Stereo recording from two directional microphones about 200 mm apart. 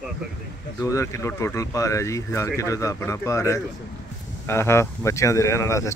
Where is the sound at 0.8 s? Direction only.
15° left (ahead or behind).